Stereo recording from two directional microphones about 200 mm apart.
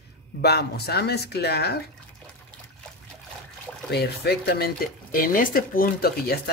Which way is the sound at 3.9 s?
55° left (ahead or behind).